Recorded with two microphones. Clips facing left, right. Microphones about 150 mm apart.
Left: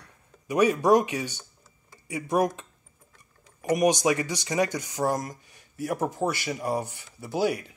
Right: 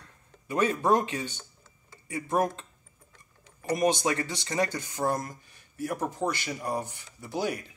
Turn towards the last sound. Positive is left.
turn(degrees=15)  # may be behind; listen again after turning